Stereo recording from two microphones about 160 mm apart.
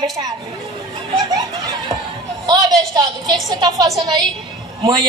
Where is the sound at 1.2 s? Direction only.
25° right (ahead or behind).